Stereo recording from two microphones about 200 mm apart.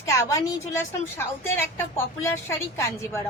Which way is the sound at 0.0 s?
15° left (ahead or behind).